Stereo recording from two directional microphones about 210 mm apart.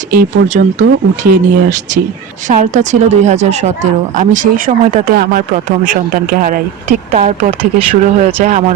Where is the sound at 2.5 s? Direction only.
35° right (ahead or behind).